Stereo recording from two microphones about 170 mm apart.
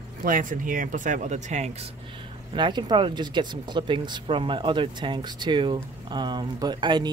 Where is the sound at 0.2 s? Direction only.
55° right (ahead or behind).